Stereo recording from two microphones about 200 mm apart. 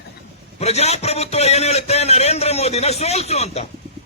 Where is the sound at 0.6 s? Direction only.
30° left (ahead or behind).